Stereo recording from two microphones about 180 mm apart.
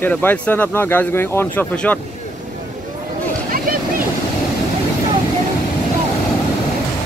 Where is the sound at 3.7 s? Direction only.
50° right (ahead or behind).